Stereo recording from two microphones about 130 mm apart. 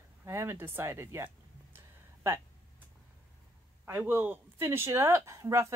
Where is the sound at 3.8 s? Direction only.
20° right (ahead or behind).